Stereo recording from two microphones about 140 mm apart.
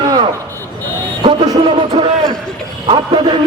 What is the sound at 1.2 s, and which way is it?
Music, 35° right (ahead or behind).